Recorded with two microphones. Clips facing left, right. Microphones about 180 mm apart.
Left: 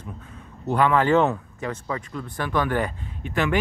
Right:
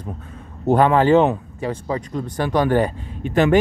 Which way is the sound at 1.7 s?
35° right (ahead or behind).